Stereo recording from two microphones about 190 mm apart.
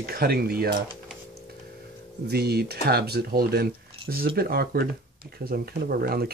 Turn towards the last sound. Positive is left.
turn(degrees=-55)  # may be behind; listen again after turning